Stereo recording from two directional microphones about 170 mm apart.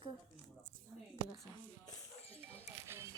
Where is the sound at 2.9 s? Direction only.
15° right (ahead or behind).